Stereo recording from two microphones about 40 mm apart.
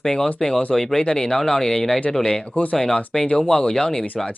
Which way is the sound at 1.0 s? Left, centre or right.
Centre.